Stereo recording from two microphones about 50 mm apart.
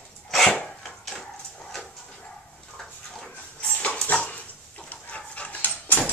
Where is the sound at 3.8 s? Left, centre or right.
Left.